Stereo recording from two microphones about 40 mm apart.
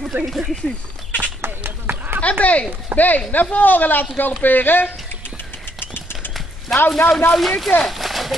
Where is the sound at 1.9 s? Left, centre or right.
Right.